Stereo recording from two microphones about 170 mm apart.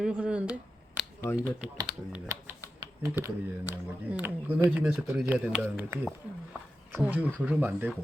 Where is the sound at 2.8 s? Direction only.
20° right (ahead or behind).